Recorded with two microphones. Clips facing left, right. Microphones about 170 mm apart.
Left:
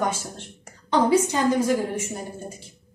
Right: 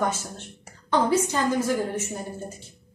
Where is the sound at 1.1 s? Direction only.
15° left (ahead or behind).